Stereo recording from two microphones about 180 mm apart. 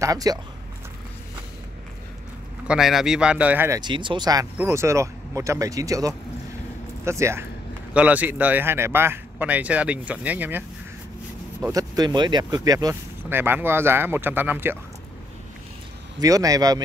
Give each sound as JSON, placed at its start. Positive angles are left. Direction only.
{"t": 0.0, "sound": "speech", "side_deg": -20}
{"t": 2.7, "sound": "speech", "side_deg": 0}
{"t": 3.8, "sound": "speech", "side_deg": -25}
{"t": 11.7, "sound": "speech", "side_deg": -20}
{"t": 16.2, "sound": "speech", "side_deg": -20}